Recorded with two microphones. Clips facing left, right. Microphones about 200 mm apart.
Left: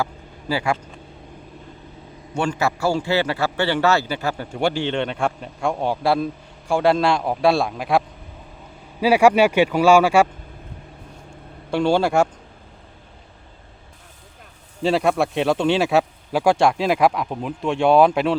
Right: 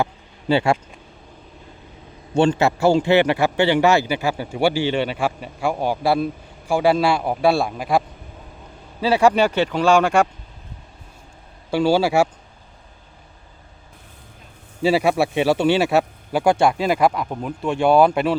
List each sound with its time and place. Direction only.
0.0 s a sound: 25° right (ahead or behind)
2.3 s a man's voice: 25° right (ahead or behind); by 8.0 s centre (ahead or behind)
9.0 s speech: 10° left (ahead or behind)
11.7 s speech: 5° right (ahead or behind)
14.8 s speech: 5° right (ahead or behind)